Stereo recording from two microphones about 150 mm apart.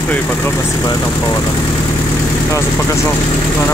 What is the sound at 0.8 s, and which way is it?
Speech, 20° left (ahead or behind).